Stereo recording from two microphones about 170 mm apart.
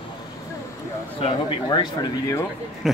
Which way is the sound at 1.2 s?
30° left (ahead or behind).